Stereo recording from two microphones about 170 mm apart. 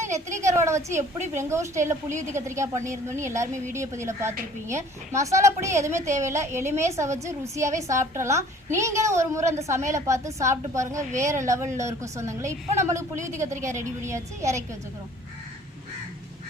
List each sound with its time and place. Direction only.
0.3 s a woman's voice: 15° right (ahead or behind)